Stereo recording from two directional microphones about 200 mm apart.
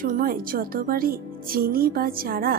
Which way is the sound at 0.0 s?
45° right (ahead or behind).